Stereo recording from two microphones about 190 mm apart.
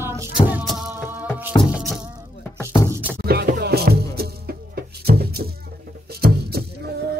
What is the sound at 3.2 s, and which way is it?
Music, 55° right (ahead or behind).